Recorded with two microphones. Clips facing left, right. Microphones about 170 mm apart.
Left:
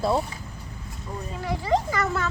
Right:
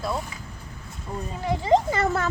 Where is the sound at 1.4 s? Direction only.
20° right (ahead or behind).